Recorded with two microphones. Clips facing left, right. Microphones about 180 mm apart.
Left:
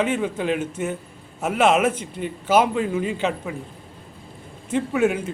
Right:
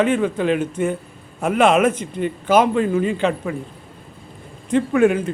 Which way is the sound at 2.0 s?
55° right (ahead or behind).